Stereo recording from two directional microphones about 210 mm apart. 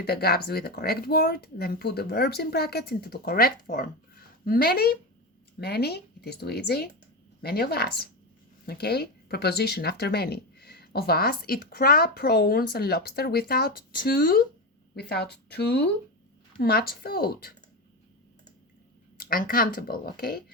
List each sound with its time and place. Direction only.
0.0 s speech: 50° left (ahead or behind)
19.1 s speech: 45° left (ahead or behind)